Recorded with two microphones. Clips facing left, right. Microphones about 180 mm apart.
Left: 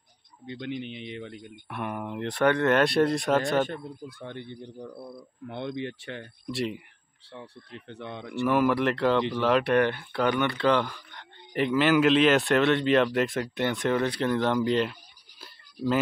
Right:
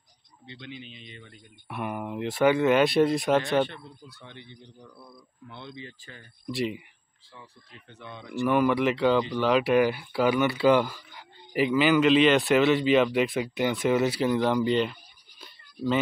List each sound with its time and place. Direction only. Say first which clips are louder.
0.5 s speech: left 8 dB; 60° left (ahead or behind); by 1.5 s 75° left (ahead or behind)
1.7 s speech: right 1 dB; 5° right (ahead or behind)
3.6 s a man's voice: left 4 dB; 45° left (ahead or behind); by 6.2 s 70° left (ahead or behind)
6.4 s speech: right 2 dB; centre (ahead or behind)
7.9 s speech: left 1 dB; 60° left (ahead or behind)
8.5 s speech: right 1 dB; centre (ahead or behind)
15.4 s a sound: even; 5° left (ahead or behind)